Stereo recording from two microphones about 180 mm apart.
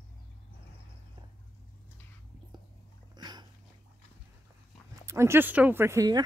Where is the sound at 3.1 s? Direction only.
25° right (ahead or behind).